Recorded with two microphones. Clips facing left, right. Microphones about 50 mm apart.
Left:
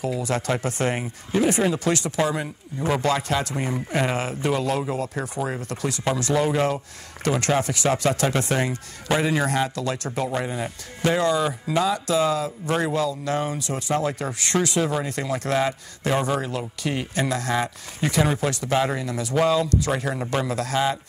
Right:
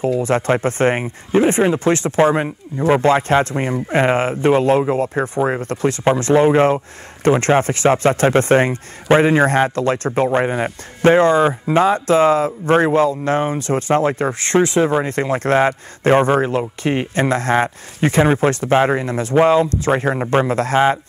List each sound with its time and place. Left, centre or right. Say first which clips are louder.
0.0 s speech: right 8 dB; right